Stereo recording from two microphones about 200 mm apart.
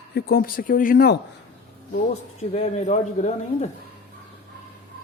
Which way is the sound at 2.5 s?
35° left (ahead or behind).